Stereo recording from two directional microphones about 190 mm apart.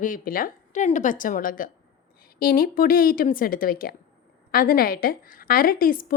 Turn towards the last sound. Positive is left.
turn(degrees=50)  # may be behind; listen again after turning